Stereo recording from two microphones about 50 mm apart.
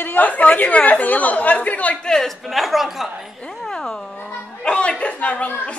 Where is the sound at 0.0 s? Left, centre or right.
Left.